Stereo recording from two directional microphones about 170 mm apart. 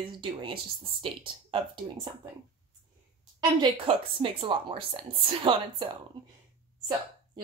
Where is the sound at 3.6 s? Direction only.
30° right (ahead or behind).